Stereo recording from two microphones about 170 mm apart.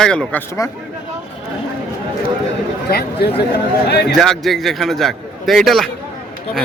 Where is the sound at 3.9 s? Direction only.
80° left.